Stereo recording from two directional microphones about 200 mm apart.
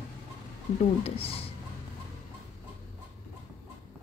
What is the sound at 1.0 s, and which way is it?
Speech, 30° left (ahead or behind).